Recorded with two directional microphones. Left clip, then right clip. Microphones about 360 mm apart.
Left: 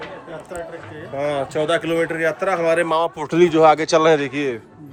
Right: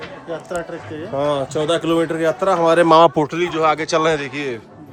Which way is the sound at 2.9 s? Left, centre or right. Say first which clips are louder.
Right 9 dB; right.